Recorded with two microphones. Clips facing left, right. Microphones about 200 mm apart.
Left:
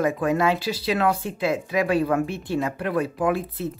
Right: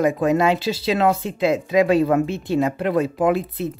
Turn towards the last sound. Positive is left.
turn(degrees=-20)  # may be behind; listen again after turning